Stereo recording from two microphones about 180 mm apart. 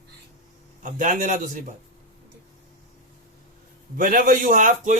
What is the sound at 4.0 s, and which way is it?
Speech, 50° right (ahead or behind).